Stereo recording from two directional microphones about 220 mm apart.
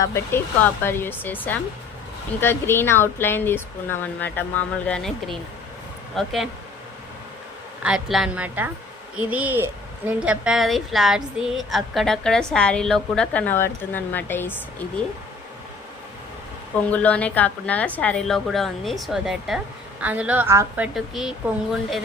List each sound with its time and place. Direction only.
0.0 s a woman's voice: 10° left (ahead or behind)
7.8 s a woman's voice: 5° right (ahead or behind)
16.8 s a woman's voice: 5° left (ahead or behind)